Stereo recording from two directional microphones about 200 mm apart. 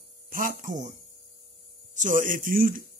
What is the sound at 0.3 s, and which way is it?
Speech, 45° right (ahead or behind).